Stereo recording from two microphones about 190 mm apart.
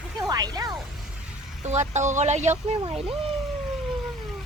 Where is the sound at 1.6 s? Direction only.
40° right (ahead or behind).